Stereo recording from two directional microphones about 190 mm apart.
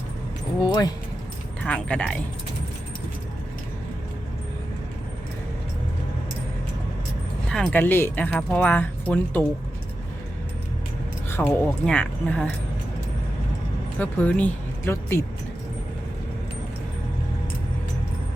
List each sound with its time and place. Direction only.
0.6 s speech: 20° left (ahead or behind)
1.6 s speech: 5° left (ahead or behind)
7.4 s speech: 5° left (ahead or behind)
11.3 s speech: 10° left (ahead or behind)
14.0 s speech: 10° left (ahead or behind)